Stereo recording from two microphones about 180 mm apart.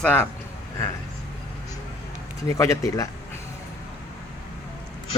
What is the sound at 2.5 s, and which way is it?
Speech, 15° left (ahead or behind).